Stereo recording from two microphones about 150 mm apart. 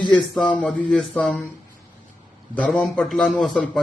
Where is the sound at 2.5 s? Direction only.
5° left (ahead or behind).